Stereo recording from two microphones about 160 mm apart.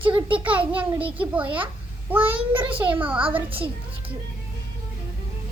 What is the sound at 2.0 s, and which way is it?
A child's voice, 10° right (ahead or behind).